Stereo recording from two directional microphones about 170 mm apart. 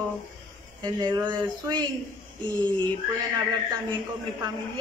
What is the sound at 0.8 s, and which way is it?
A woman's voice, 25° right (ahead or behind).